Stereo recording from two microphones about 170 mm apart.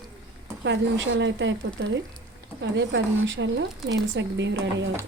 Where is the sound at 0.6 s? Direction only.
90° right.